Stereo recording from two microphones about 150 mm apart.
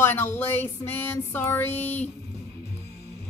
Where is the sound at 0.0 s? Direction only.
15° left (ahead or behind).